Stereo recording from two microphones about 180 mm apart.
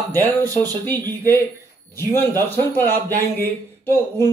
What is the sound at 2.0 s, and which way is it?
A man's voice, 15° left (ahead or behind).